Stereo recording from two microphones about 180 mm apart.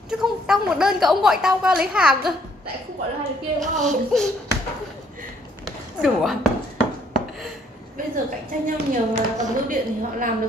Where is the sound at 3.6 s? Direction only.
45° right (ahead or behind).